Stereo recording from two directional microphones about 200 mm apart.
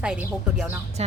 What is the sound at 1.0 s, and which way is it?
Speech, 30° right (ahead or behind).